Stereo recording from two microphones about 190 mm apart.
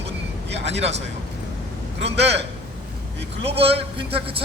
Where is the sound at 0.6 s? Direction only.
35° right (ahead or behind).